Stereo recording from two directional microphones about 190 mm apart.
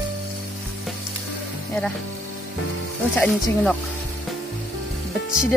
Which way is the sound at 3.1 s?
5° left (ahead or behind).